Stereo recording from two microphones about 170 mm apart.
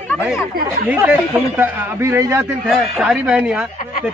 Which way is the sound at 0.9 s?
10° right (ahead or behind).